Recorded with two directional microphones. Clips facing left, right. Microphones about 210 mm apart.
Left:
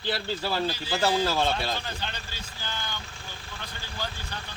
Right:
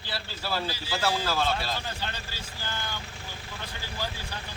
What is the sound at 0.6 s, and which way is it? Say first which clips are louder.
Speech: left 3 dB; 5° right (ahead or behind).